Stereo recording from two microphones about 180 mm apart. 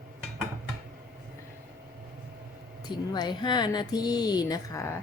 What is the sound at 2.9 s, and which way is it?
Speech, 25° left (ahead or behind).